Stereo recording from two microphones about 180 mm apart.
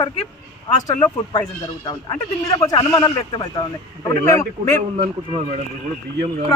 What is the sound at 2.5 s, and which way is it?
A man's voice, 20° left (ahead or behind).